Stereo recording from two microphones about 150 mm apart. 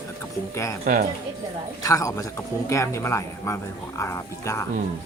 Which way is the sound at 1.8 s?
20° left (ahead or behind).